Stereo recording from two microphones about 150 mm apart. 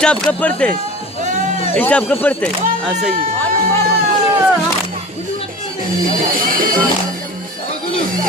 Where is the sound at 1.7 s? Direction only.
10° left (ahead or behind).